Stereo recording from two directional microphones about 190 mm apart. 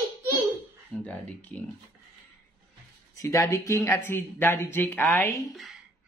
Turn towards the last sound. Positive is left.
turn(degrees=0)  # may be behind; listen again after turning